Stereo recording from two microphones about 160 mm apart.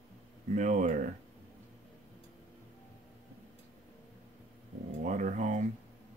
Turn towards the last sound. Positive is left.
turn(degrees=-50)  # may be behind; listen again after turning